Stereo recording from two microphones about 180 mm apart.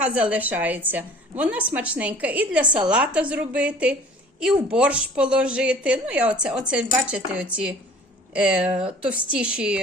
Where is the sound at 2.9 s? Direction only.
5° right (ahead or behind).